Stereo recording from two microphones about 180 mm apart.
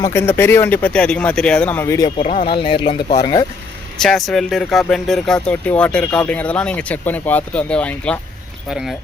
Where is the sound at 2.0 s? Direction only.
35° left (ahead or behind).